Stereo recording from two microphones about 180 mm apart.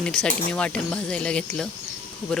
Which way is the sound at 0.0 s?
5° left (ahead or behind).